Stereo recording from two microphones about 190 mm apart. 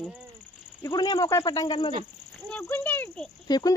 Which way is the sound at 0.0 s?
Centre (ahead or behind).